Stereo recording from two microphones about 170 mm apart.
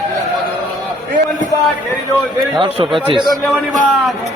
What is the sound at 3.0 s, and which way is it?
Speech, 30° right (ahead or behind).